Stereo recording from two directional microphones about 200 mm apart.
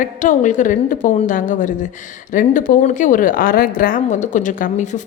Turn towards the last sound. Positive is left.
turn(degrees=40)  # may be behind; listen again after turning